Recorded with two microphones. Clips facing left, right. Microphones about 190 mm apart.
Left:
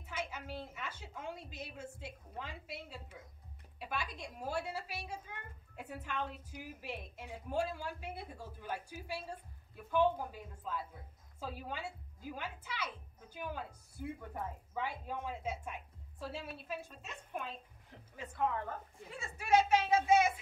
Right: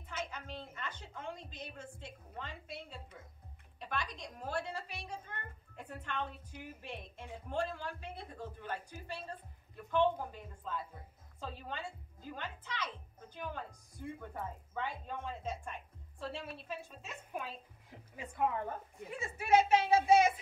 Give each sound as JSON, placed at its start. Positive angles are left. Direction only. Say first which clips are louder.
{"t": 0.0, "sound": "a woman's voice", "louder": "even", "side_deg": 10}
{"t": 18.9, "sound": "a woman's voice", "louder": "right 5 dB", "side_deg": -20}